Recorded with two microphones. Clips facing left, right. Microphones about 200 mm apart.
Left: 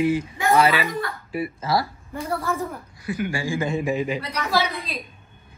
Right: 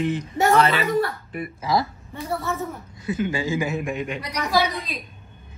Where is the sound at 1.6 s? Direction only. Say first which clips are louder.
Right 2 dB; 15° right (ahead or behind).